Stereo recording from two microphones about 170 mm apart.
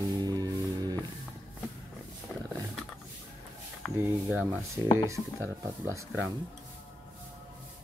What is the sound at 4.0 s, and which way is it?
Speech, 10° right (ahead or behind).